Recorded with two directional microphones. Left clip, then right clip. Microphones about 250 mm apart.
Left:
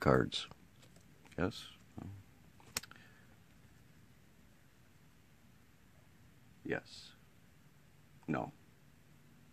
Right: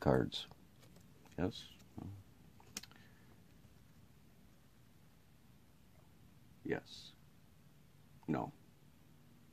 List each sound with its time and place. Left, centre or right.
0.0 s speech: centre
1.3 s a sound: centre
6.6 s speech: centre
8.3 s speech: centre